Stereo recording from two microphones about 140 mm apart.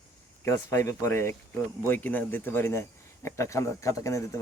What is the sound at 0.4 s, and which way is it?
A man's voice, 20° left (ahead or behind).